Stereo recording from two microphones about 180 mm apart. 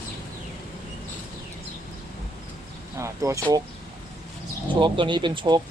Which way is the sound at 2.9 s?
15° right (ahead or behind).